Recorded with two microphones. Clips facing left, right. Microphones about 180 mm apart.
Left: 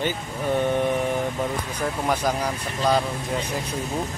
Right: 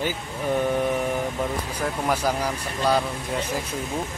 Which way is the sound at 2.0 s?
5° right (ahead or behind).